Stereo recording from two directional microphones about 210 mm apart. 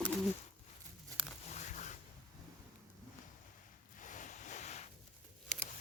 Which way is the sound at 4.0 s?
35° left (ahead or behind).